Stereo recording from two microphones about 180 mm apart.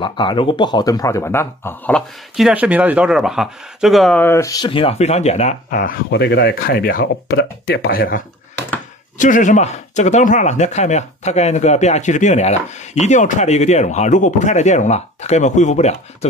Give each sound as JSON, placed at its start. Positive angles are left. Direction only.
{"t": 0.0, "sound": "speech", "side_deg": 25}
{"t": 7.3, "sound": "speech", "side_deg": 65}
{"t": 9.2, "sound": "speech", "side_deg": 45}